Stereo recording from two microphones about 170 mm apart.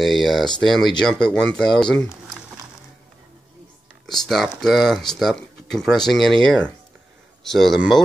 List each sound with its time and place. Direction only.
0.0 s speech: centre (ahead or behind)
4.0 s speech: centre (ahead or behind)